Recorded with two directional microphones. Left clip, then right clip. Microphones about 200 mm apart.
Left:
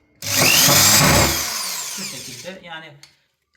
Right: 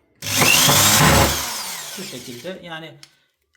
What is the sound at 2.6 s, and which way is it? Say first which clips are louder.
Speech: right 1 dB; 35° right (ahead or behind).